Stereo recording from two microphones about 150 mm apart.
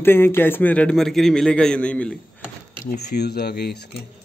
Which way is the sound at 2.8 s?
90° left.